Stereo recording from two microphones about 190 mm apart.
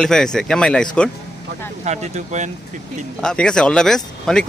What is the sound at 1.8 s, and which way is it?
Speech, 40° right (ahead or behind).